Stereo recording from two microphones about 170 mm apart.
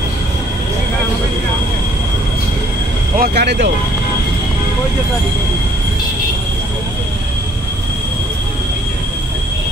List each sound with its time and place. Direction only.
3.2 s speech: 75° right (ahead or behind)